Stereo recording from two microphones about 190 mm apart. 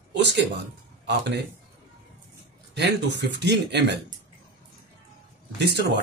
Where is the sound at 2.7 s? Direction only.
65° right (ahead or behind).